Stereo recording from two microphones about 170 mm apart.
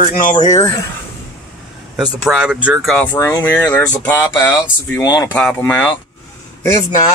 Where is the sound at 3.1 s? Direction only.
15° left (ahead or behind).